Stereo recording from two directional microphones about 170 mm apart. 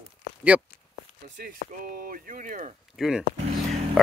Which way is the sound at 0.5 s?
10° right (ahead or behind).